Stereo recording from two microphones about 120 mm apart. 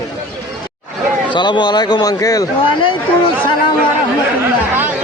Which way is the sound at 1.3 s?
40° left (ahead or behind).